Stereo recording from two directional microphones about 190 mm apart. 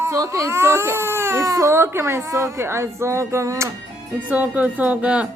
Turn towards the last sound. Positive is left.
turn(degrees=-5)  # may be behind; listen again after turning